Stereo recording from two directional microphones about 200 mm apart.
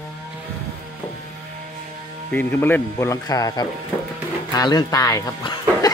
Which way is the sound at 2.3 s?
10° left (ahead or behind).